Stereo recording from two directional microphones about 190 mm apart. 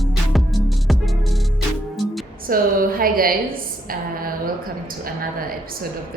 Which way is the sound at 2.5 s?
50° right (ahead or behind).